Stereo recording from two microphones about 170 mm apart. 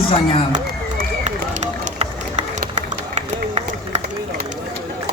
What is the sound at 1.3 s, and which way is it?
Run, 45° right (ahead or behind).